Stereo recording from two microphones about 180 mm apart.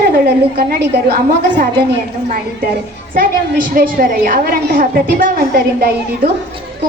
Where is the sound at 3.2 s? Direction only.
50° right (ahead or behind).